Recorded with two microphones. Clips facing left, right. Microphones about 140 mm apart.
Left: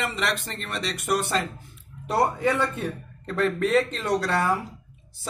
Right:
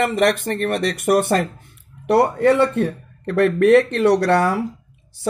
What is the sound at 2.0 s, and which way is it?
A man's voice, 70° right (ahead or behind).